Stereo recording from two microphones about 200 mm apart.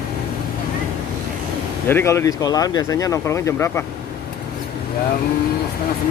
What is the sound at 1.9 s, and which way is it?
Speech, 10° left (ahead or behind).